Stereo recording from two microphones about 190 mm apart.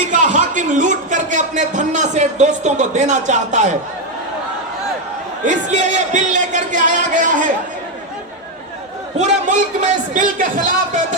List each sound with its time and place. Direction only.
0.1 s a man's voice: 40° right (ahead or behind)
5.5 s speech: 40° right (ahead or behind)
9.1 s speech: 35° right (ahead or behind)